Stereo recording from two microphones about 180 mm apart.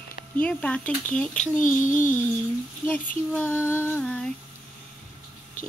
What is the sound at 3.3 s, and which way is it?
Speech, 5° left (ahead or behind).